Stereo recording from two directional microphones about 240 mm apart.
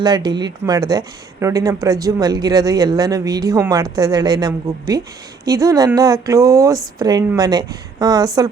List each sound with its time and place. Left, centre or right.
0.0 s speech: centre